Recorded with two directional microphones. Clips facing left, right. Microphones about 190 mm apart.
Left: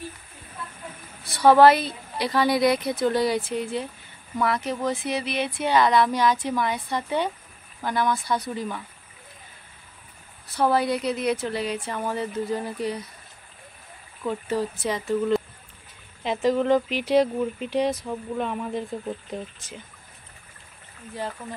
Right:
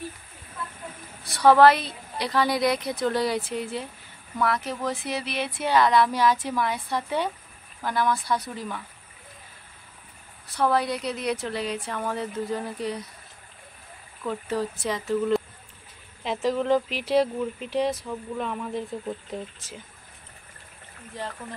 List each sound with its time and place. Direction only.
1.2 s speech: centre (ahead or behind)
10.5 s speech: 5° left (ahead or behind)
14.2 s speech: centre (ahead or behind)